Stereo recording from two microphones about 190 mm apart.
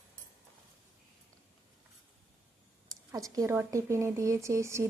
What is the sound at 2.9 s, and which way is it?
Speech, 20° right (ahead or behind).